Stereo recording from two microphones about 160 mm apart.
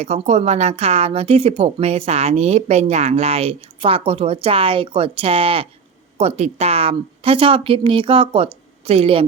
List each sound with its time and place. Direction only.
0.0 s a woman's voice: 45° right (ahead or behind)